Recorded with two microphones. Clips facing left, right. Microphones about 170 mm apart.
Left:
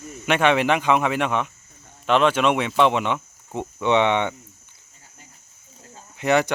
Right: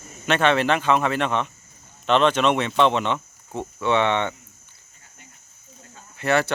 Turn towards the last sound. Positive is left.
turn(degrees=15)  # may be behind; listen again after turning